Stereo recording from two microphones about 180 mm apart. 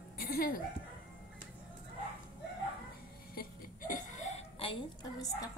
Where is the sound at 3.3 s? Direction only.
50° left (ahead or behind).